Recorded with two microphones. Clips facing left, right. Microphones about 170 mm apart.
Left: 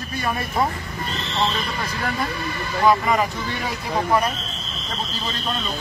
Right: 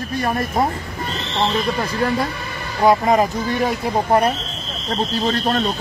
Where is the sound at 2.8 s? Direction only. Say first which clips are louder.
Right 4 dB; 40° right (ahead or behind).